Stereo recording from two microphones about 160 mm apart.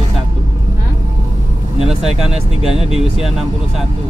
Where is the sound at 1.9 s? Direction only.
5° right (ahead or behind).